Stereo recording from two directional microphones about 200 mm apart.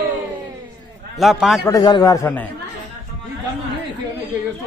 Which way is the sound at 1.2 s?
Centre (ahead or behind).